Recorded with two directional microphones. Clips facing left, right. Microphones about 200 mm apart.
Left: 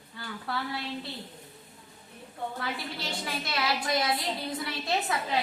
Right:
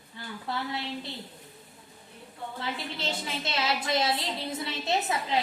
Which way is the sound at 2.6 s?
25° right (ahead or behind).